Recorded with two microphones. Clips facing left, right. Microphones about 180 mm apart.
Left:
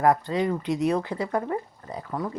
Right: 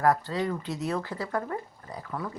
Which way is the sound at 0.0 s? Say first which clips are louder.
Left 3 dB; 20° left (ahead or behind).